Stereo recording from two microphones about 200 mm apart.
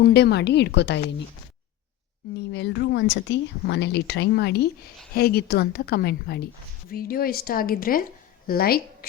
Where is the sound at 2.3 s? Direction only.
60° left (ahead or behind).